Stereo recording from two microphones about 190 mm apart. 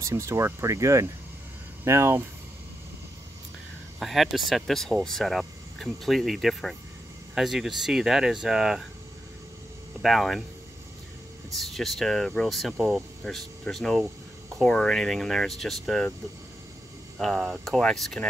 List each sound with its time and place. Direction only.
0.0 s speech: 15° right (ahead or behind)
4.0 s speech: centre (ahead or behind)
10.0 s speech: centre (ahead or behind)
11.5 s speech: centre (ahead or behind)
17.2 s speech: centre (ahead or behind)